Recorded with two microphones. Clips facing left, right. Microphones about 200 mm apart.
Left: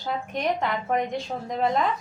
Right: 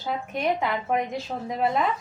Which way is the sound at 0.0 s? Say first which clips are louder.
Even; 5° right (ahead or behind).